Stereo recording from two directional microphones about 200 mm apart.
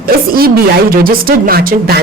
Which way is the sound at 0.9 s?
45° right (ahead or behind).